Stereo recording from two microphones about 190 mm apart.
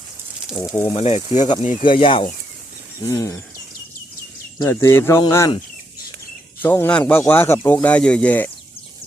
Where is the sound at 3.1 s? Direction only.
15° left (ahead or behind).